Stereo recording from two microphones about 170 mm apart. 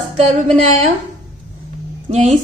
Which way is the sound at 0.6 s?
40° right (ahead or behind).